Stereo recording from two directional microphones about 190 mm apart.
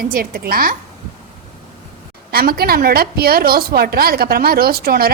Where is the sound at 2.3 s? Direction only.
55° right (ahead or behind).